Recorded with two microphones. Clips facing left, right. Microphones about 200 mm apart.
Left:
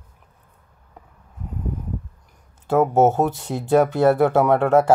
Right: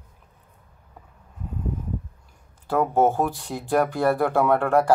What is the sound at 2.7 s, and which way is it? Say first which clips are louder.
Speech: left 4 dB; 20° left (ahead or behind).